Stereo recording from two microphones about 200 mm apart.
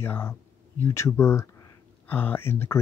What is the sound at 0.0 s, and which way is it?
Speech, 10° left (ahead or behind).